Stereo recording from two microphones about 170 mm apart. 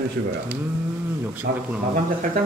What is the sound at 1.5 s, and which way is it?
Speech, 65° right (ahead or behind).